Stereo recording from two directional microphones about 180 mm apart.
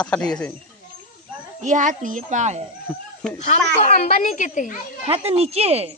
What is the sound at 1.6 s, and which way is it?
A woman's voice, 45° right (ahead or behind).